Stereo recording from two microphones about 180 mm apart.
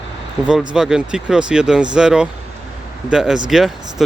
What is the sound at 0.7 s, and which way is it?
Speech, 5° right (ahead or behind).